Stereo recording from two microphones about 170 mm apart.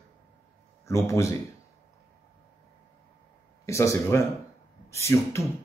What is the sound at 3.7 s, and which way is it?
Speech, 15° left (ahead or behind).